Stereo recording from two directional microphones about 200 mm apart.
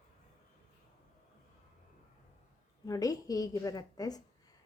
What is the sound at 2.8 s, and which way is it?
A woman's voice, 20° left (ahead or behind).